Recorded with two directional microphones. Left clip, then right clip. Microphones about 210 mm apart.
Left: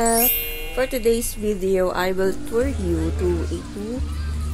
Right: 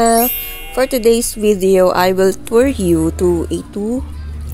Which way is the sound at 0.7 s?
35° right (ahead or behind).